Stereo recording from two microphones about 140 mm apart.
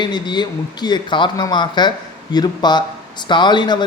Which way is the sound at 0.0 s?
30° left (ahead or behind).